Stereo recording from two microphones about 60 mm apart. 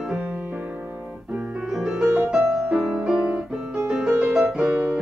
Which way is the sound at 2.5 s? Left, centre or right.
Centre.